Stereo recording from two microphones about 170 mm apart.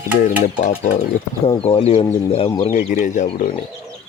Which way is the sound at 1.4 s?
30° left (ahead or behind).